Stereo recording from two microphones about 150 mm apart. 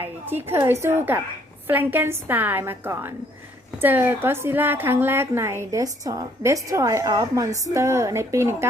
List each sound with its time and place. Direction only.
0.3 s a woman's voice: 15° right (ahead or behind)